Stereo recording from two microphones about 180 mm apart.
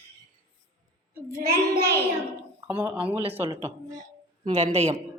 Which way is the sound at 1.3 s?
55° right (ahead or behind).